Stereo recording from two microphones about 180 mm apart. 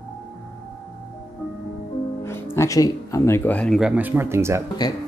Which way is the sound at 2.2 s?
15° left (ahead or behind).